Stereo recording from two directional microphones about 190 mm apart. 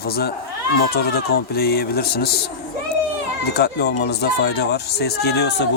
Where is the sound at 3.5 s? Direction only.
60° left (ahead or behind).